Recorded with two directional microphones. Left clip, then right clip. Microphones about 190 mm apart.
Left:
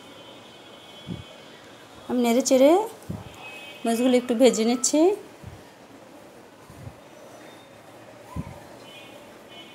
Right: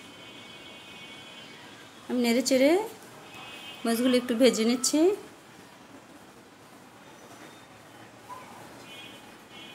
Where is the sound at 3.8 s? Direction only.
10° left (ahead or behind).